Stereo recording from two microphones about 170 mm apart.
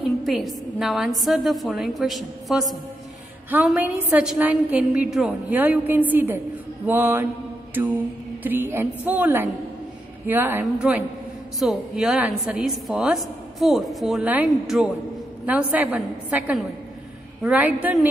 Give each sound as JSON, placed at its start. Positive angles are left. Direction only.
{"t": 0.2, "sound": "a woman's voice", "side_deg": 0}
{"t": 7.7, "sound": "music", "side_deg": -10}
{"t": 8.5, "sound": "a woman's voice", "side_deg": -10}